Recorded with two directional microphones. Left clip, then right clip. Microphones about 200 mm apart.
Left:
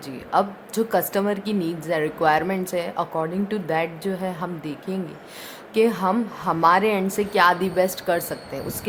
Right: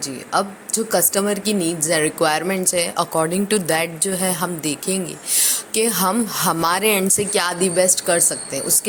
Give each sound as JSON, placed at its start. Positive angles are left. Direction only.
{"t": 0.3, "sound": "a woman's voice", "side_deg": -15}